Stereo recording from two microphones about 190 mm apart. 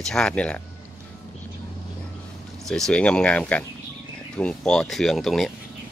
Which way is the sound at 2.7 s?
5° left (ahead or behind).